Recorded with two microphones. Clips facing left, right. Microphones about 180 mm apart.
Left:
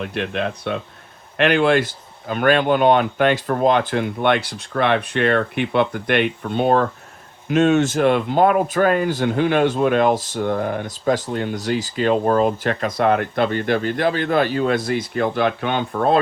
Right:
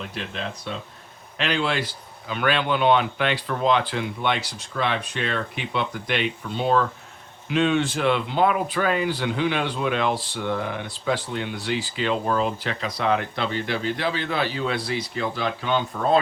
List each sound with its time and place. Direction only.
0.0 s speech: 60° left (ahead or behind)